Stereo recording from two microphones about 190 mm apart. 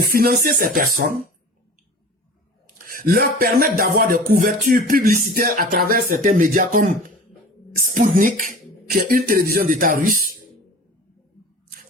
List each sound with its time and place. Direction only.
0.0 s speech: 50° right (ahead or behind)
2.7 s speech: 50° right (ahead or behind)
7.9 s speech: 45° right (ahead or behind)